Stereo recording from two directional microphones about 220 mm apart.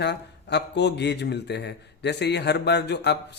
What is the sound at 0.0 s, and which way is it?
A man's voice, 50° left (ahead or behind).